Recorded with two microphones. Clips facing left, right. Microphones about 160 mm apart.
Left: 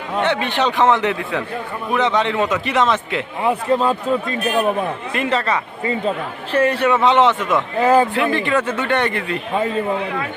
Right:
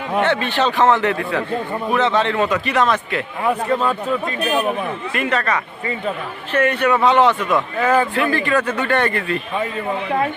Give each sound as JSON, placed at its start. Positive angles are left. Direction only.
{"t": 0.2, "sound": "a man's voice", "side_deg": 15}